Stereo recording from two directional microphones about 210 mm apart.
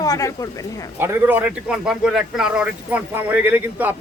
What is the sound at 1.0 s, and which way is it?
A man's voice, 10° right (ahead or behind).